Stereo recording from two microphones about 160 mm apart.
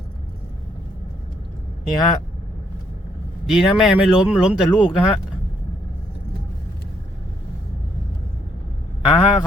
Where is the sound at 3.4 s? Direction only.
Centre (ahead or behind).